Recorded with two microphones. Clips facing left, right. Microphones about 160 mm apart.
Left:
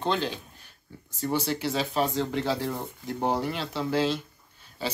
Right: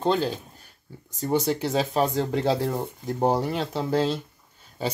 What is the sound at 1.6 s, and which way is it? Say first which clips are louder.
Speech: right 3 dB; 40° right (ahead or behind).